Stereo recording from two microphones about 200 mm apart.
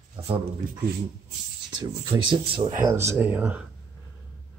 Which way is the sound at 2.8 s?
15° right (ahead or behind).